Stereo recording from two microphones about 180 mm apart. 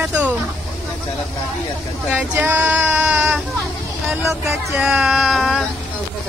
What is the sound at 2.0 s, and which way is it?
Speech, 5° right (ahead or behind).